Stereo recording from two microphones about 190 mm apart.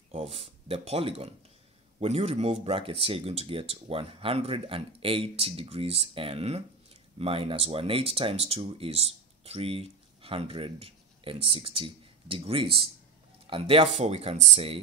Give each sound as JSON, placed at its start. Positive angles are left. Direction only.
{"t": 0.1, "sound": "speech", "side_deg": -30}